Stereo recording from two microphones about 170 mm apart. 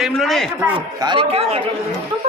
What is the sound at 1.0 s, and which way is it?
Speech, 25° right (ahead or behind).